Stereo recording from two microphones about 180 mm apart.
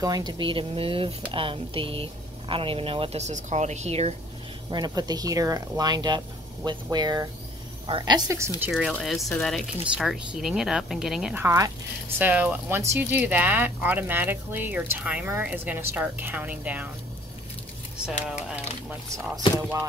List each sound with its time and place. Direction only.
0.0 s speech: 20° right (ahead or behind); by 4.1 s 35° right (ahead or behind)
4.6 s speech: 25° right (ahead or behind)
8.7 s speech: centre (ahead or behind)
18.2 s speech: 5° right (ahead or behind)